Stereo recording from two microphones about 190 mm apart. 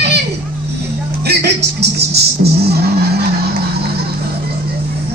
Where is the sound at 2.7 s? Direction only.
55° right (ahead or behind).